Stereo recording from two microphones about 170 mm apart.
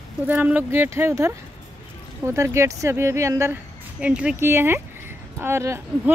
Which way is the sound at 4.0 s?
5° right (ahead or behind).